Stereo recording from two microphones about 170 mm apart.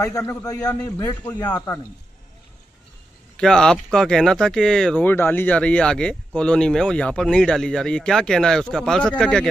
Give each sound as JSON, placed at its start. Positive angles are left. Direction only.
{"t": 0.0, "sound": "a man's voice", "side_deg": 20}
{"t": 3.3, "sound": "speech", "side_deg": 5}